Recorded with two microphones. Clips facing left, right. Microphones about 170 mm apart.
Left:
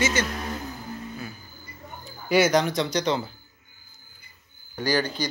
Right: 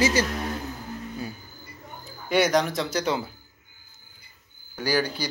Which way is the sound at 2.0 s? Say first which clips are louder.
Left 2 dB; centre (ahead or behind).